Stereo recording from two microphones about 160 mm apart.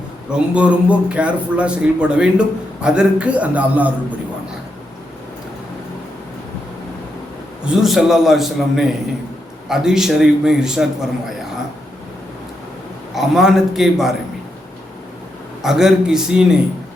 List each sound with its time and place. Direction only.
0.3 s a man's voice: 5° right (ahead or behind)
7.6 s a man's voice: 5° right (ahead or behind)
13.1 s a man's voice: centre (ahead or behind)
15.6 s a man's voice: 5° right (ahead or behind)